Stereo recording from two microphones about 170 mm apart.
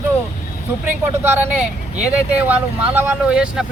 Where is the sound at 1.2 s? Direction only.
10° right (ahead or behind).